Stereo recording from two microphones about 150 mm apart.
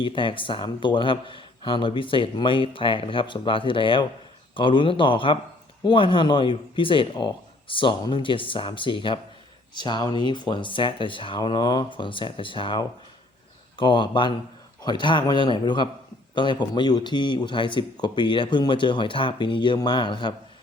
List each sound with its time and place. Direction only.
0.0 s speech: 35° left (ahead or behind)